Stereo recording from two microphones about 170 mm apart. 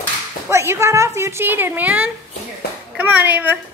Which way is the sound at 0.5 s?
15° right (ahead or behind).